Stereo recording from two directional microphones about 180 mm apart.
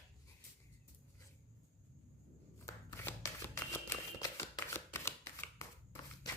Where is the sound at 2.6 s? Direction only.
15° left (ahead or behind).